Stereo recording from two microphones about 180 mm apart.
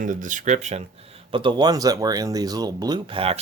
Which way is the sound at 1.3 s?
25° right (ahead or behind).